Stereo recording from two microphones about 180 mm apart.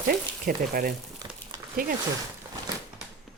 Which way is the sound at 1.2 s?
25° right (ahead or behind).